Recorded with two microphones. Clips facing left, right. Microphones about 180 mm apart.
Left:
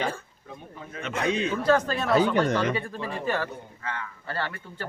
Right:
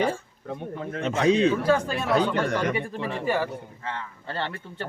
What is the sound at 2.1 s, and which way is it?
Speech, 5° left (ahead or behind).